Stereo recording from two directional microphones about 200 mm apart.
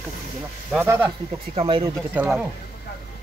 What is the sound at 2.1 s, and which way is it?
Speech, 5° right (ahead or behind).